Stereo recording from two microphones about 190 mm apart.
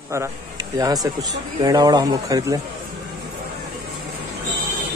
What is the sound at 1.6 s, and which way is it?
Speech, 20° right (ahead or behind).